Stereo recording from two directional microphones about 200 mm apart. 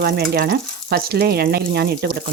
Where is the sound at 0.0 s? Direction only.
50° right (ahead or behind).